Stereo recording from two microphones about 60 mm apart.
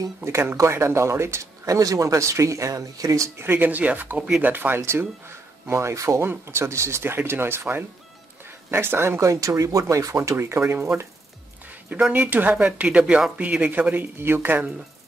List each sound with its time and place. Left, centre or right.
0.2 s speech: right
3.3 s speech: right
9.2 s speech: right
10.3 s speech: right
11.6 s a sound: right
12.1 s speech: right
12.5 s speech: centre; by 14.6 s right